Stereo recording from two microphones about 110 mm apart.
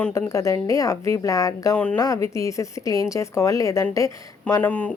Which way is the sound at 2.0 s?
30° left (ahead or behind).